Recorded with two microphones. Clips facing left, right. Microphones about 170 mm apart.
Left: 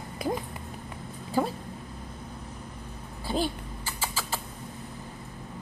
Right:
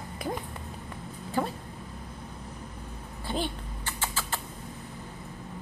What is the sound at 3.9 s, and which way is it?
Rodents, 10° left (ahead or behind).